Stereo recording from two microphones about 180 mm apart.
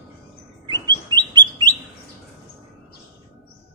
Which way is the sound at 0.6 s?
25° right (ahead or behind).